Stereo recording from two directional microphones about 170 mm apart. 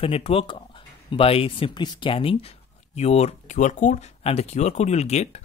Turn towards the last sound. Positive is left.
turn(degrees=40)  # may be behind; listen again after turning